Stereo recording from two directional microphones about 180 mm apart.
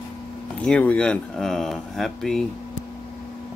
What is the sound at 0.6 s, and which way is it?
Speech, 5° left (ahead or behind).